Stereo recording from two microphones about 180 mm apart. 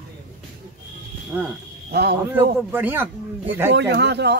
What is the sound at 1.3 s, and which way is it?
Speech, 5° right (ahead or behind).